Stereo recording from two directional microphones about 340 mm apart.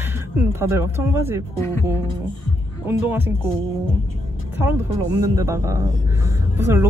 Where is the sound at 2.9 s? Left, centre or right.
Centre.